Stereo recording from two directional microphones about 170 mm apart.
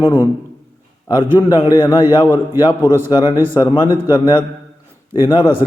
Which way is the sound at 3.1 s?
25° left (ahead or behind).